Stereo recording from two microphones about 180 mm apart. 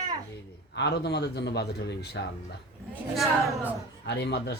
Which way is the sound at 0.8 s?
65° left (ahead or behind).